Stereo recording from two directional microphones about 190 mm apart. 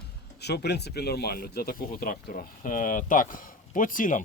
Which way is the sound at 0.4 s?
60° left (ahead or behind).